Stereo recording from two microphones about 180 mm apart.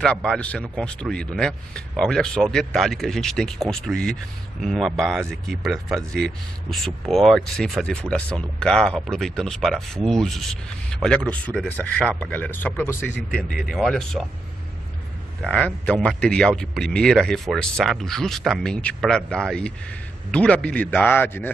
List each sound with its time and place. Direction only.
0.0 s speech: 5° left (ahead or behind)
15.4 s a man's voice: 5° left (ahead or behind)